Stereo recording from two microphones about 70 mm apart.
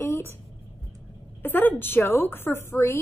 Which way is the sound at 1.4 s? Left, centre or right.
Left.